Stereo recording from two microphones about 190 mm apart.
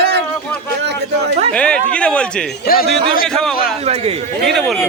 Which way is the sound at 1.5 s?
5° left (ahead or behind).